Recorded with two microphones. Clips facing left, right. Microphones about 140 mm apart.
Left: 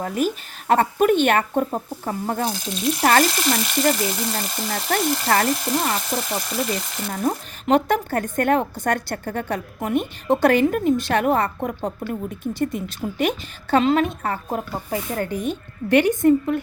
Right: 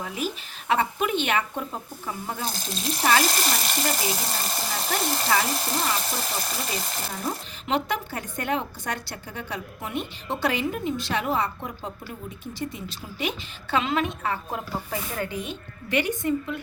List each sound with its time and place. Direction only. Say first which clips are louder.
0.0 s speech: left 8 dB; 50° left (ahead or behind)
2.5 s speech: left 5 dB; 35° right (ahead or behind)
3.0 s speech: left 5 dB; 55° left (ahead or behind)
3.2 s speech: left 4 dB; 40° right (ahead or behind)
5.3 s speech: left 4 dB; 50° left (ahead or behind)
6.1 s speech: left 6 dB; 35° right (ahead or behind)
7.1 s speech: left 11 dB; 50° left (ahead or behind)